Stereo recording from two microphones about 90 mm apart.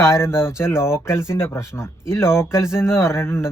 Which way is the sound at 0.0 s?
30° left (ahead or behind).